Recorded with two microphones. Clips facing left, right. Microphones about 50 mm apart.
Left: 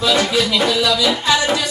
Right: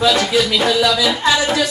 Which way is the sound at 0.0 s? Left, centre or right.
Centre.